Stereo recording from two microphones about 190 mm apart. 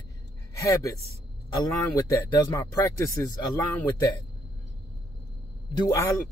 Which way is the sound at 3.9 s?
20° left (ahead or behind).